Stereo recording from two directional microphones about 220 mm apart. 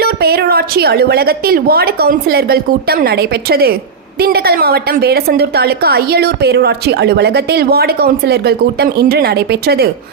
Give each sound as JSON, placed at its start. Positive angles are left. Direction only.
{"t": 0.0, "sound": "a woman's voice", "side_deg": -45}